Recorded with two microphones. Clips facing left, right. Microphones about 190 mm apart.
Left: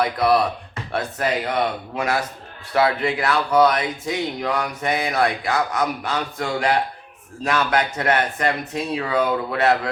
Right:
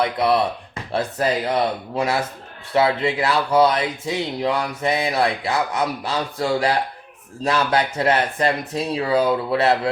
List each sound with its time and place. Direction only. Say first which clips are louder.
0.0 s speech: even; 25° right (ahead or behind)
2.7 s speech: right 1 dB; 25° right (ahead or behind)